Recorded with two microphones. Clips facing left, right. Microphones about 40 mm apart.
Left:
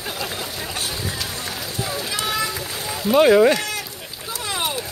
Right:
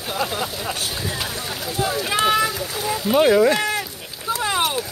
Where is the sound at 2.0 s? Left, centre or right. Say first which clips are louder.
Right 7 dB; right.